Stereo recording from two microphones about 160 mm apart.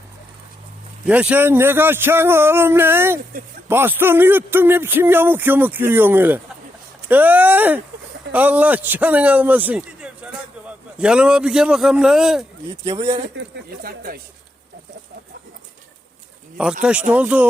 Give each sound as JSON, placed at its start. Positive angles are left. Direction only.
{"t": 1.0, "sound": "a man's voice", "side_deg": -10}
{"t": 13.8, "sound": "speech", "side_deg": -65}
{"t": 16.8, "sound": "speech", "side_deg": -10}